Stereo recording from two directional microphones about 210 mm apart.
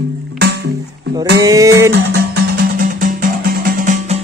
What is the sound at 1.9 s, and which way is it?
Music, 50° right (ahead or behind).